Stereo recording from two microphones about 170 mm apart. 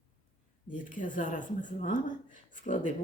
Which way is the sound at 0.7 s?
50° left (ahead or behind).